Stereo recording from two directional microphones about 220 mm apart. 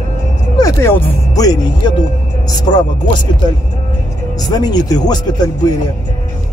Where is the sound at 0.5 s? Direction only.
15° left (ahead or behind).